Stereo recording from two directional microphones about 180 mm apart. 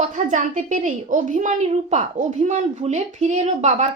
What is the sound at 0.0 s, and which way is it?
A woman's voice, 45° right (ahead or behind).